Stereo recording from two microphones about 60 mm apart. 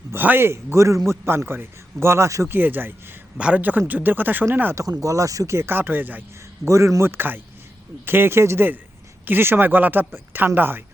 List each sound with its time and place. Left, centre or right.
0.2 s speech: right
1.2 s speech: right
2.5 s speech: right
3.3 s speech: right
4.7 s speech: right
5.5 s speech: right
6.7 s a man's voice: right
7.0 s speech: right